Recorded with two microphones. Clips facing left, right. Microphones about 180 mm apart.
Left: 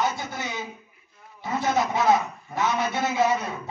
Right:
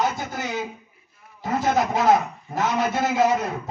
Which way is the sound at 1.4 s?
45° right (ahead or behind).